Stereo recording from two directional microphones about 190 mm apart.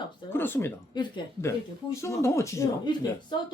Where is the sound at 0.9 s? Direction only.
20° left (ahead or behind).